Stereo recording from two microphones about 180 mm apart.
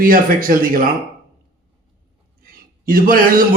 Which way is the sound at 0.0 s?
50° right (ahead or behind).